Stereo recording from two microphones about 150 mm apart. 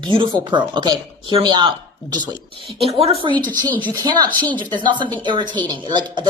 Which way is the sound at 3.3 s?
10° left (ahead or behind).